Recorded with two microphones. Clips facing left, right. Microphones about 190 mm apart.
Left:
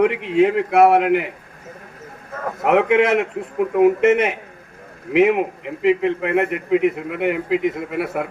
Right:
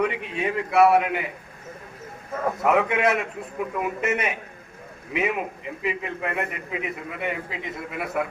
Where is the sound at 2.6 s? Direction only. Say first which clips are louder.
Left 7 dB; 70° left (ahead or behind).